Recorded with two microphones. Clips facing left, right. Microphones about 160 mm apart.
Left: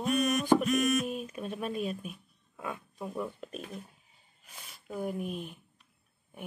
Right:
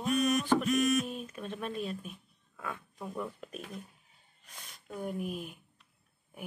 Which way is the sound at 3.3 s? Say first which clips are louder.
Left 2 dB; centre (ahead or behind).